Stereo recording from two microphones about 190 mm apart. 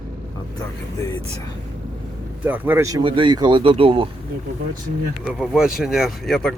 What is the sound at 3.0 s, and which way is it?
Speech, 25° right (ahead or behind).